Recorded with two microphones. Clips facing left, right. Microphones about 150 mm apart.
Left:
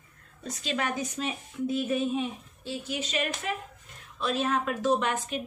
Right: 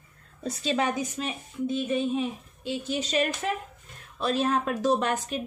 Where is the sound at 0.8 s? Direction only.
15° right (ahead or behind).